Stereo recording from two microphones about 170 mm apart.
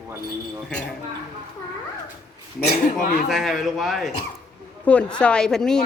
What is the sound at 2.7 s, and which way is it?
Speech, 50° left (ahead or behind).